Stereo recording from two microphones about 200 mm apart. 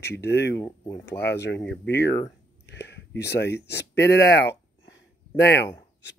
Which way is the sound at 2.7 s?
55° left (ahead or behind).